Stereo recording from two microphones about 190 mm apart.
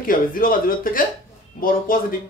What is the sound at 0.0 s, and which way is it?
Speech, 50° left (ahead or behind).